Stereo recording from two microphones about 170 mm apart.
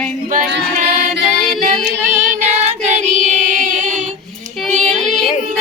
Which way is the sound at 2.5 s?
40° right (ahead or behind).